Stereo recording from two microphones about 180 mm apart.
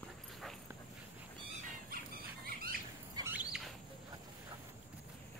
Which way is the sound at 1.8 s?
55° right (ahead or behind).